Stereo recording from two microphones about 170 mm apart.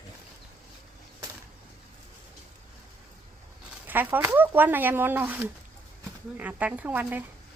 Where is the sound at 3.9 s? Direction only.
10° right (ahead or behind).